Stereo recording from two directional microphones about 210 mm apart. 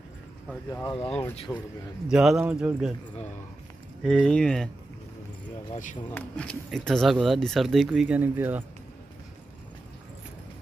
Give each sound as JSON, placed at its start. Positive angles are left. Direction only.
{"t": 0.7, "sound": "speech", "side_deg": 15}
{"t": 1.3, "sound": "speech", "side_deg": 30}
{"t": 2.0, "sound": "speech", "side_deg": -5}
{"t": 4.0, "sound": "speech", "side_deg": 5}
{"t": 6.0, "sound": "speech", "side_deg": 5}